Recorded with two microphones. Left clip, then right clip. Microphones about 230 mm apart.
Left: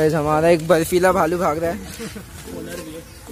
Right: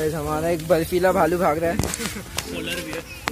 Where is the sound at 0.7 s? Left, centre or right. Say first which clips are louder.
Left 3 dB; left.